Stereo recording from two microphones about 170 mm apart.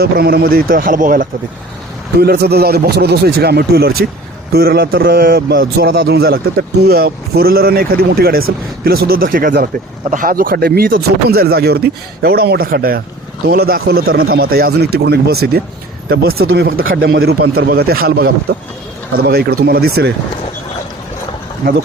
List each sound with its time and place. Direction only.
0.0 s speech: 65° right (ahead or behind)
2.1 s speech: 70° right (ahead or behind)
21.6 s speech: 60° right (ahead or behind)